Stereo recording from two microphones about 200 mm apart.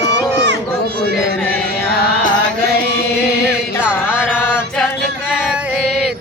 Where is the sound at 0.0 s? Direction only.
60° right (ahead or behind).